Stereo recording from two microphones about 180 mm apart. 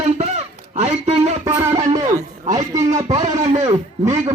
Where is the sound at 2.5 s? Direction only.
20° right (ahead or behind).